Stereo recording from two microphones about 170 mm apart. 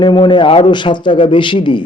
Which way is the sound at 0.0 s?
25° left (ahead or behind).